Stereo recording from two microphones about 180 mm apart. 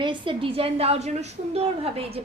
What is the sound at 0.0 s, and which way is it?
A woman's voice, 25° right (ahead or behind).